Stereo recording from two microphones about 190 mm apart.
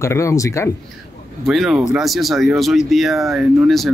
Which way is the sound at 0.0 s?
15° left (ahead or behind).